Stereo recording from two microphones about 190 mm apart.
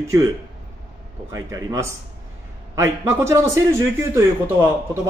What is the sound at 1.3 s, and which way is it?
A man's voice, 15° right (ahead or behind).